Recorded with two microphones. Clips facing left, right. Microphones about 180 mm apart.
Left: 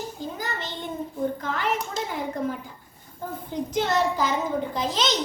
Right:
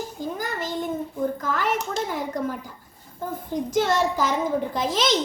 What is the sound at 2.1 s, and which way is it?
A woman's voice, 40° right (ahead or behind).